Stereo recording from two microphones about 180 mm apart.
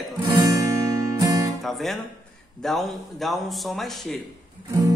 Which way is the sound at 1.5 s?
Centre (ahead or behind).